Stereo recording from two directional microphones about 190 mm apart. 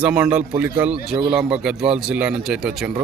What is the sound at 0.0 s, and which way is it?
A man's voice, 5° right (ahead or behind).